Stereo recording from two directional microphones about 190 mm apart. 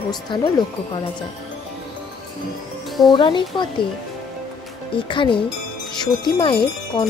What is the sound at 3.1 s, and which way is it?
Speech, 25° left (ahead or behind).